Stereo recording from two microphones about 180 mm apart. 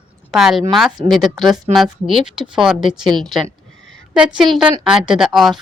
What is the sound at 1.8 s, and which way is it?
Speech, 25° right (ahead or behind).